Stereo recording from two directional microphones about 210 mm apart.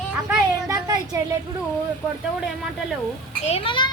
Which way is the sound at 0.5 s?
15° right (ahead or behind).